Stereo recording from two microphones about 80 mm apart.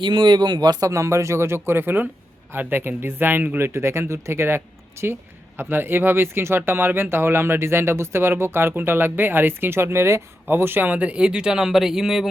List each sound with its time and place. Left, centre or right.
0.0 s speech: right
0.9 s speech: right; by 12.3 s centre